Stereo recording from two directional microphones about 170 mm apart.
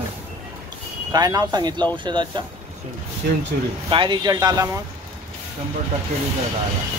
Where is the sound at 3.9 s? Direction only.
25° right (ahead or behind).